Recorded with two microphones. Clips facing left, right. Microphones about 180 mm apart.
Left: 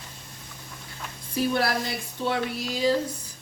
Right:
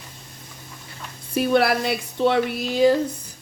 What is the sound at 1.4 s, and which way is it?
A woman's voice, 65° right (ahead or behind).